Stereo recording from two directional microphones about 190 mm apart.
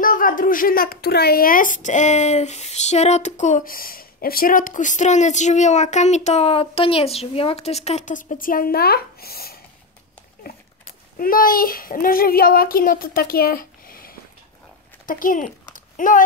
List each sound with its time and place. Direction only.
0.0 s a woman's voice: 45° left (ahead or behind)
11.1 s a child's voice: 50° left (ahead or behind)
15.0 s a sound: 45° left (ahead or behind)